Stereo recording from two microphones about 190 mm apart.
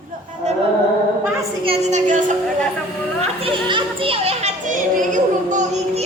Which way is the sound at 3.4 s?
30° right (ahead or behind).